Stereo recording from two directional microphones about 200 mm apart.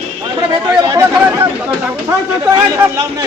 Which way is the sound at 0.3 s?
20° right (ahead or behind).